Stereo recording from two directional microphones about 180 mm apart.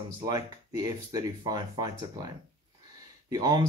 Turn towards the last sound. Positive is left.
turn(degrees=-20)  # may be behind; listen again after turning